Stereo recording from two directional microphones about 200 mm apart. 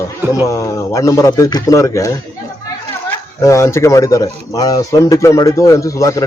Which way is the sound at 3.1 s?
15° left (ahead or behind).